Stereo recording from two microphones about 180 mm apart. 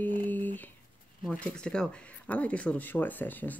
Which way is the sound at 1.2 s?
5° left (ahead or behind).